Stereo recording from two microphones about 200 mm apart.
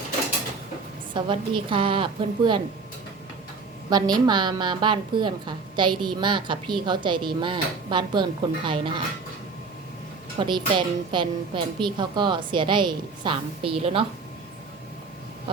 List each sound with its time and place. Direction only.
1.1 s a woman's voice: 25° right (ahead or behind)
3.8 s a woman's voice: 20° right (ahead or behind)
10.3 s a woman's voice: 25° right (ahead or behind)